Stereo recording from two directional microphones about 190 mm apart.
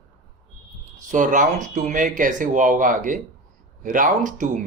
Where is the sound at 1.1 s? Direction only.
40° right (ahead or behind).